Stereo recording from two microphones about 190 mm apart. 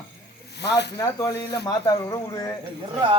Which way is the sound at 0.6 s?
65° left (ahead or behind).